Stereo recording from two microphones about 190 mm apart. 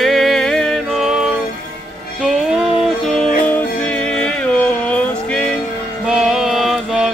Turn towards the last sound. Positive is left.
turn(degrees=0)  # may be behind; listen again after turning